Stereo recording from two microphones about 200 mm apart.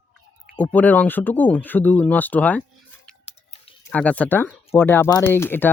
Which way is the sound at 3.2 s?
30° left (ahead or behind).